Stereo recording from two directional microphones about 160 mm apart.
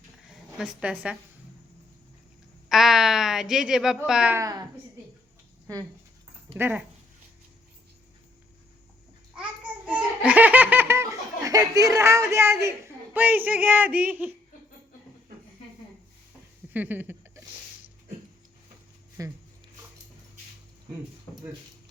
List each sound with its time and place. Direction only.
0.3 s speech: 5° right (ahead or behind)
2.6 s speech: centre (ahead or behind)
4.4 s a woman's voice: 20° right (ahead or behind)
6.6 s speech: 10° right (ahead or behind)
9.9 s speech: 10° right (ahead or behind)
16.7 s a sound: 10° right (ahead or behind)
19.2 s a woman's voice: 20° right (ahead or behind)
21.3 s a sound: 10° left (ahead or behind)